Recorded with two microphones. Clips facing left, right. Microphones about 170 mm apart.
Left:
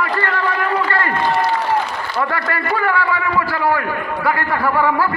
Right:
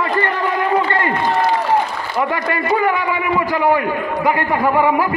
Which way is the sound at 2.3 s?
20° right (ahead or behind).